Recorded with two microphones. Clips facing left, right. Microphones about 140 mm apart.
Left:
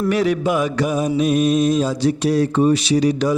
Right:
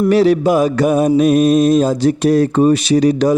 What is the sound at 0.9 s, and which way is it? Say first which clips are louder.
Mantra: right 8 dB; 55° right (ahead or behind).